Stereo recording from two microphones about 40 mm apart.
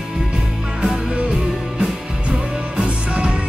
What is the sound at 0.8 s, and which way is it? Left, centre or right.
Music, centre.